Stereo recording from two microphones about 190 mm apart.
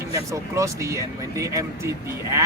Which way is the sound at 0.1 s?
15° right (ahead or behind).